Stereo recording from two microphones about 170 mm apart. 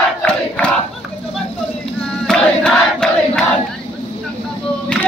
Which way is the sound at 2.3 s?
5° left (ahead or behind).